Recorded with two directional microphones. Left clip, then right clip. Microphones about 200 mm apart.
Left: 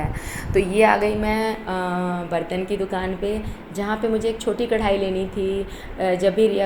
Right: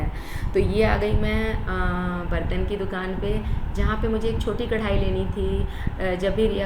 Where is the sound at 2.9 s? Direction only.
15° left (ahead or behind).